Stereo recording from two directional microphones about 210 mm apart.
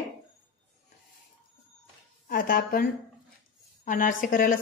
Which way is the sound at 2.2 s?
45° left (ahead or behind).